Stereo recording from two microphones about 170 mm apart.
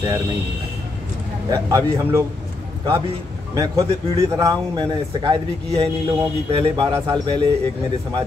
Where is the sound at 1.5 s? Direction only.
20° right (ahead or behind).